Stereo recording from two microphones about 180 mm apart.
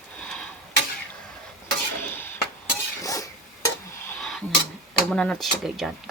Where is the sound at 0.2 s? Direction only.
5° left (ahead or behind).